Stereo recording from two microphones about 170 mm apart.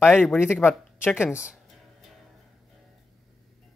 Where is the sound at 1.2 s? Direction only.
5° right (ahead or behind).